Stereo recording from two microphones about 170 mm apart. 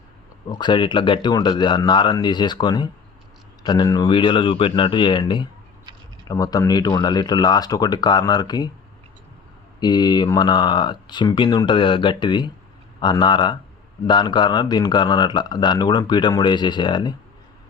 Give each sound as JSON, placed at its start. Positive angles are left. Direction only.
{"t": 0.4, "sound": "speech", "side_deg": 25}
{"t": 9.8, "sound": "speech", "side_deg": 25}